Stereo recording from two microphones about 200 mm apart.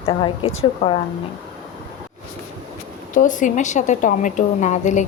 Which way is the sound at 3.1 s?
40° left (ahead or behind).